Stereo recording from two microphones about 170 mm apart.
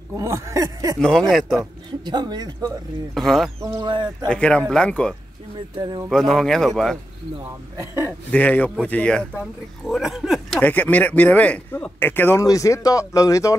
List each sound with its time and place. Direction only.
0.2 s speech: 20° right (ahead or behind)
0.9 s speech: 5° left (ahead or behind)
2.0 s speech: 25° right (ahead or behind)
3.2 s speech: centre (ahead or behind)
3.6 s speech: 25° right (ahead or behind)
4.3 s speech: 5° left (ahead or behind)
5.8 s speech: 25° right (ahead or behind)
6.0 s speech: centre (ahead or behind)
7.8 s a man's voice: 15° right (ahead or behind)
8.3 s a man's voice: 10° left (ahead or behind)
10.6 s a man's voice: 10° left (ahead or behind)